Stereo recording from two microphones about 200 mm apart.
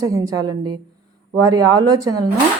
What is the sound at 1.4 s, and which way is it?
Speech, 20° right (ahead or behind).